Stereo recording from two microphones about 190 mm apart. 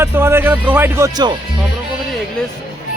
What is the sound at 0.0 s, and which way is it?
Music, 10° right (ahead or behind).